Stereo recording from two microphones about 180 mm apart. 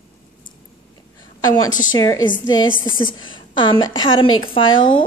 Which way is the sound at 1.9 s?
25° left (ahead or behind).